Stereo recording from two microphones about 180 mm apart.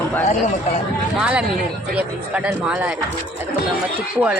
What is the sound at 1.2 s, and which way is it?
Speech, 5° right (ahead or behind).